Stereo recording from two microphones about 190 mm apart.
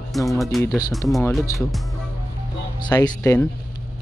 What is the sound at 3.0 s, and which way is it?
Speech, 15° left (ahead or behind).